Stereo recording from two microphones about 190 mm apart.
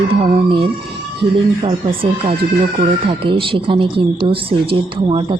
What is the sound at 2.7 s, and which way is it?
Speech, 25° right (ahead or behind).